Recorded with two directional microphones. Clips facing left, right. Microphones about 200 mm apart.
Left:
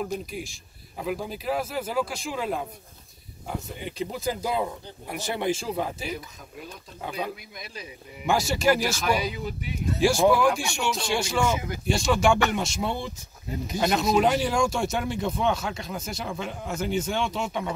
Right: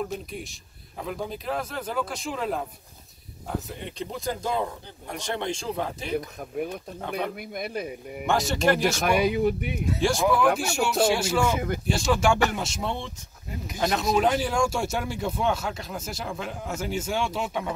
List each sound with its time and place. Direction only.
0.0 s speech: centre (ahead or behind)
6.1 s speech: 60° right (ahead or behind)
8.3 s speech: centre (ahead or behind)
8.9 s speech: 55° right (ahead or behind)
9.9 s speech: 5° left (ahead or behind)